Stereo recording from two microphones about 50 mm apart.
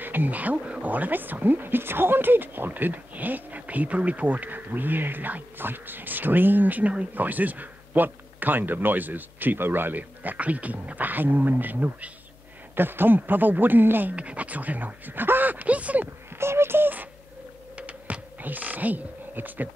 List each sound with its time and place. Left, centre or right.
0.0 s speech: right
14.1 s speech: right
16.3 s beatboxing: right
17.7 s a sound: right